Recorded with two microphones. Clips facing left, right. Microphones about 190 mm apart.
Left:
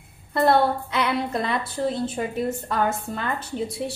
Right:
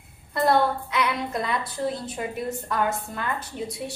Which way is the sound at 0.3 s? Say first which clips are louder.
Left 2 dB; 30° left (ahead or behind).